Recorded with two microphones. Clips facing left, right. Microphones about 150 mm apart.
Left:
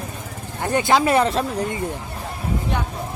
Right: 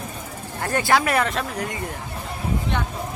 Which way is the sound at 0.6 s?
20° left (ahead or behind).